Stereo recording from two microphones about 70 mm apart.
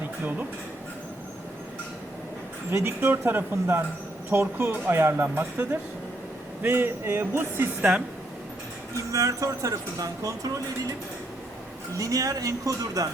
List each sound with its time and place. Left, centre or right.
2.8 s speech: right
7.8 s a woman's voice: centre
9.0 s speech: right
11.9 s speech: right